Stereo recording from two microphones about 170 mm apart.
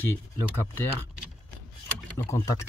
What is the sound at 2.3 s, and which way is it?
Speech, 15° left (ahead or behind).